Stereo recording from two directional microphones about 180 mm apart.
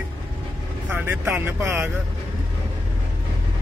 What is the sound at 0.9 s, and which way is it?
Speech, 10° right (ahead or behind).